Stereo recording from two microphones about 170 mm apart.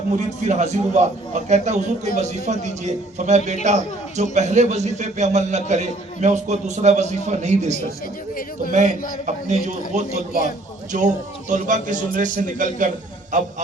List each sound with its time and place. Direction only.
0.4 s a man's voice: 45° right (ahead or behind)